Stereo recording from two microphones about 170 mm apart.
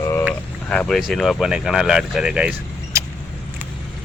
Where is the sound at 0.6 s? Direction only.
5° left (ahead or behind).